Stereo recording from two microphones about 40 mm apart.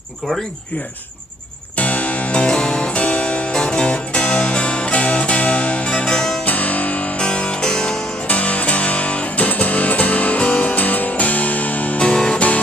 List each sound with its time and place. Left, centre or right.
1.8 s music: left
2.4 s music: left
6.0 s music: centre
6.4 s music: left
7.2 s music: left
7.6 s music: centre
8.3 s music: left
12.0 s music: left